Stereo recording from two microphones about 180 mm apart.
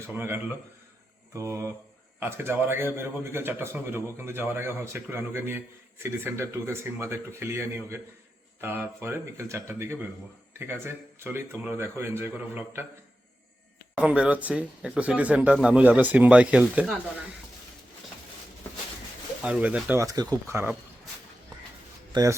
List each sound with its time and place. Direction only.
0.1 s a man's voice: 10° right (ahead or behind)
13.9 s a man's voice: 5° right (ahead or behind)
19.4 s a man's voice: 5° right (ahead or behind)
22.1 s speech: 20° right (ahead or behind)